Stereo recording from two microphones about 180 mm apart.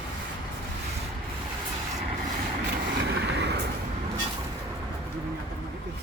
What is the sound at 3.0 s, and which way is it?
Vehicle, 70° right (ahead or behind).